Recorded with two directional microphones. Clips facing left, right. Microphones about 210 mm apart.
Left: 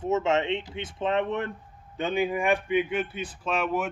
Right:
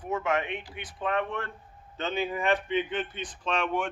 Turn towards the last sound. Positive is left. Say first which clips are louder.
# left 2 dB
turn(degrees=5)  # may be behind; listen again after turning